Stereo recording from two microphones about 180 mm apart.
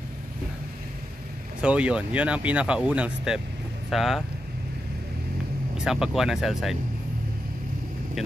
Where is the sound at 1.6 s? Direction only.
5° right (ahead or behind).